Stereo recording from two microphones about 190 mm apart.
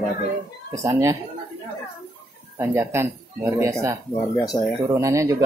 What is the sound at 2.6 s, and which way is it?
Speech, 10° right (ahead or behind).